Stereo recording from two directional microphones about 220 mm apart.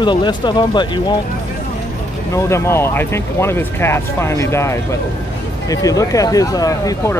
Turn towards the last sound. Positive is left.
turn(degrees=15)  # may be behind; listen again after turning